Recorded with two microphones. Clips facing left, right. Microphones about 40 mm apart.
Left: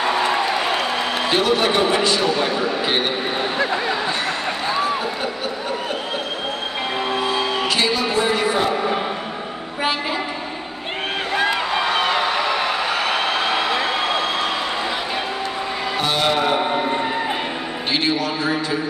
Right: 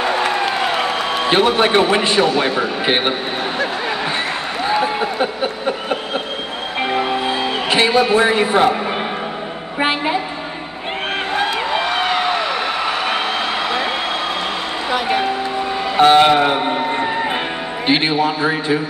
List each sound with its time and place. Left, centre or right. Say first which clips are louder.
1.3 s a man's voice: right 5 dB; right
4.8 s a man's voice: right 4 dB; right
7.2 s a man's voice: right 2 dB; right
16.0 s music: right 10 dB; right
17.8 s a man's voice: right 6 dB; right